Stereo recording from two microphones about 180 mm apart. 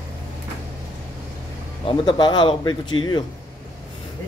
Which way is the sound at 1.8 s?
25° left (ahead or behind).